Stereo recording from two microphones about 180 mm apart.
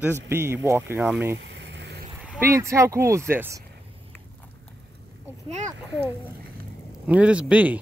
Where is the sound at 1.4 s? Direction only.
75° right (ahead or behind).